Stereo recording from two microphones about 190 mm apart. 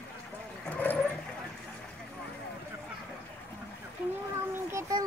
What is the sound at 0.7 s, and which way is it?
Vehicle, 10° left (ahead or behind).